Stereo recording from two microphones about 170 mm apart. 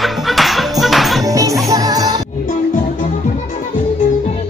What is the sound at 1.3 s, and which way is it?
Music, 20° right (ahead or behind).